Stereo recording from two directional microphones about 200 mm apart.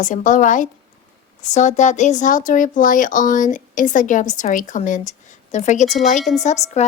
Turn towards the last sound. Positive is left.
turn(degrees=35)  # may be behind; listen again after turning